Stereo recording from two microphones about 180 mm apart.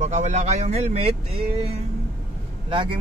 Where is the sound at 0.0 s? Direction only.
40° right (ahead or behind).